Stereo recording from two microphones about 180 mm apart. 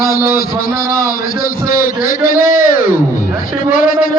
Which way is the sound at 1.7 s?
50° left (ahead or behind).